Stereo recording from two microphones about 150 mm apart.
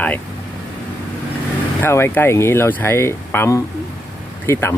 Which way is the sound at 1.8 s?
15° left (ahead or behind).